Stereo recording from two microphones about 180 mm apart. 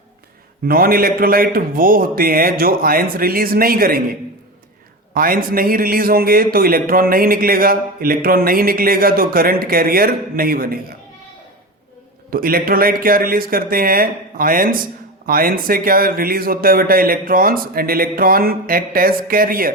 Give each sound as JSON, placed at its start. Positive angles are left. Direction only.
{"t": 0.7, "sound": "a man's voice", "side_deg": -55}
{"t": 12.3, "sound": "a man's voice", "side_deg": -55}